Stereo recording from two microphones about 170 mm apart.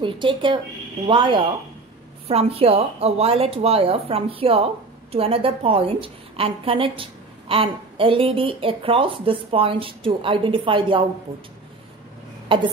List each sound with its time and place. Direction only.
0.0 s a woman's voice: 30° right (ahead or behind)
12.5 s speech: 30° right (ahead or behind)